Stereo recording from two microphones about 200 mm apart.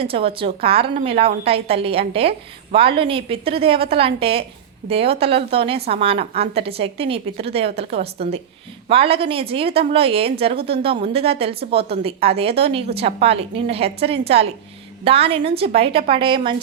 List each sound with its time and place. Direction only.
0.0 s a woman's voice: 30° right (ahead or behind)